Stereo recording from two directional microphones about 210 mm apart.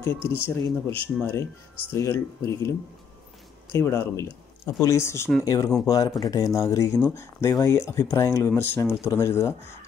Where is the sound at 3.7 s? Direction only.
10° left (ahead or behind).